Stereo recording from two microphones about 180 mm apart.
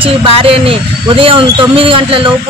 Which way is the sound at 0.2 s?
30° right (ahead or behind).